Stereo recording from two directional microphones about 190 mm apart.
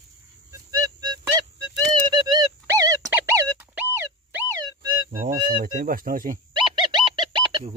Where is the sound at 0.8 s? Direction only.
20° right (ahead or behind).